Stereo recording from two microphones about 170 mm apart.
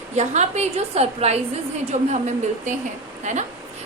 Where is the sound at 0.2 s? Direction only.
40° right (ahead or behind).